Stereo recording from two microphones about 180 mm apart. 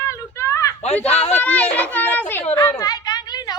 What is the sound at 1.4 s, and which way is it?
A child's voice, 10° left (ahead or behind).